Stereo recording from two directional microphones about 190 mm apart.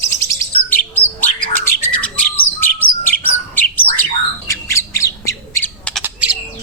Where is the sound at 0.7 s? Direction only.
10° left (ahead or behind).